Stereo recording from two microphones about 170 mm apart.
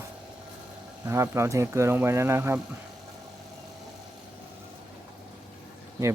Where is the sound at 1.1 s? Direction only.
15° right (ahead or behind).